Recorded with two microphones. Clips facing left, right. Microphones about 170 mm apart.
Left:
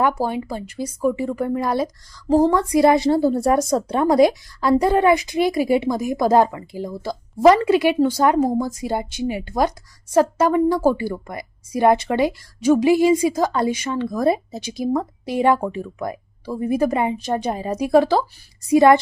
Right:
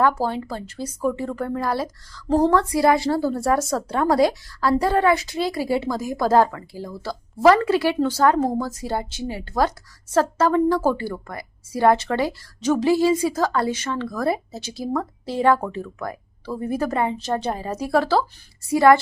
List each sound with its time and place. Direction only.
0.0 s a woman's voice: 15° left (ahead or behind)
2.2 s a woman's voice: 10° left (ahead or behind)